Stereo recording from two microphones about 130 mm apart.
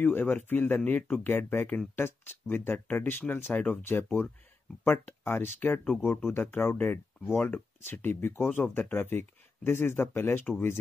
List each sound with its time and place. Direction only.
0.0 s speech: 15° left (ahead or behind)